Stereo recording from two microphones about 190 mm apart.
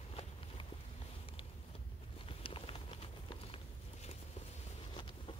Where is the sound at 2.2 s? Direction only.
30° left (ahead or behind).